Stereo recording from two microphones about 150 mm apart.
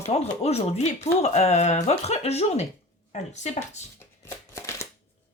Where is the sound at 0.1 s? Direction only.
45° left (ahead or behind).